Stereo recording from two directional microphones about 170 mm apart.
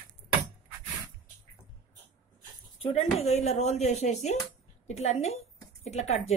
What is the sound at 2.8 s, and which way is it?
Speech, 35° left (ahead or behind).